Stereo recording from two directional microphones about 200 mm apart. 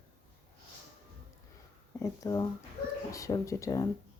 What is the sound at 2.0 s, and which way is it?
Speech, 15° left (ahead or behind).